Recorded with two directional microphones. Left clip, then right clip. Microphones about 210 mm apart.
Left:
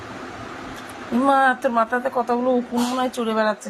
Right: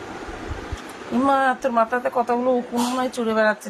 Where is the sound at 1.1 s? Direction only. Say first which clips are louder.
Left 2 dB; 5° left (ahead or behind).